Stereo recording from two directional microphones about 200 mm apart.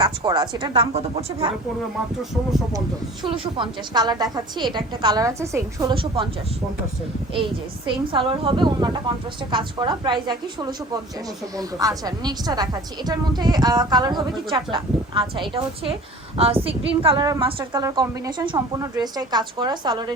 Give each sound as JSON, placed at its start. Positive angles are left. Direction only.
{"t": 0.0, "sound": "a woman's voice", "side_deg": -20}
{"t": 3.2, "sound": "a woman's voice", "side_deg": -25}
{"t": 7.3, "sound": "a woman's voice", "side_deg": -25}